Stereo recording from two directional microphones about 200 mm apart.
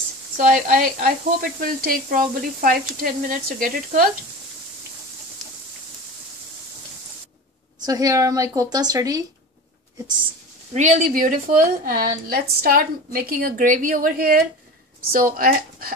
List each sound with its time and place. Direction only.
0.4 s speech: 45° right (ahead or behind)
5.4 s a sound: centre (ahead or behind)
7.8 s a woman's voice: 20° right (ahead or behind)
10.7 s speech: 35° right (ahead or behind)